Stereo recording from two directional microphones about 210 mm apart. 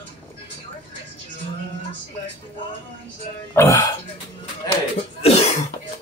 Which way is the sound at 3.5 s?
15° left (ahead or behind).